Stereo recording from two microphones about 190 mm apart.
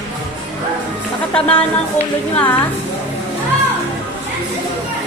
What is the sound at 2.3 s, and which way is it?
Speech, 10° left (ahead or behind).